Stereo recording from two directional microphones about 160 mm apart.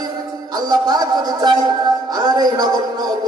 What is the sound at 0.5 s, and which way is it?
Speech, 25° right (ahead or behind).